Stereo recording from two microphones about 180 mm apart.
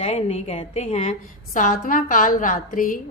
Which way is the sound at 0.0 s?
35° left (ahead or behind).